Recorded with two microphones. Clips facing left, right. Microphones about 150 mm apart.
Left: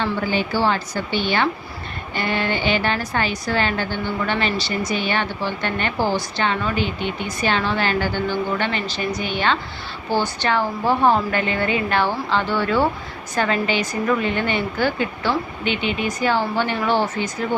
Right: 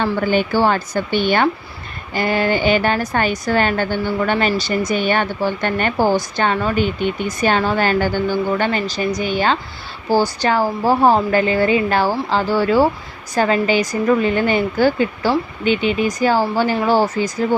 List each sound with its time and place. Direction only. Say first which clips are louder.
0.0 s a woman's voice: right 5 dB; 50° right (ahead or behind)